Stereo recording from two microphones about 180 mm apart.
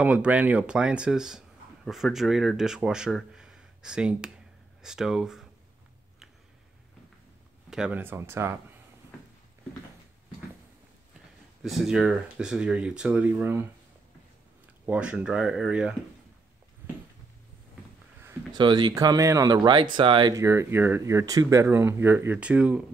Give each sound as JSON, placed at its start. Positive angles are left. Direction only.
{"t": 0.0, "sound": "speech", "side_deg": -5}
{"t": 7.7, "sound": "speech", "side_deg": -5}
{"t": 11.6, "sound": "speech", "side_deg": 0}
{"t": 14.9, "sound": "speech", "side_deg": -5}
{"t": 18.2, "sound": "speech", "side_deg": -25}